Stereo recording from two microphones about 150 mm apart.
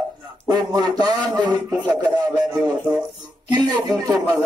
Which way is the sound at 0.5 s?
25° right (ahead or behind).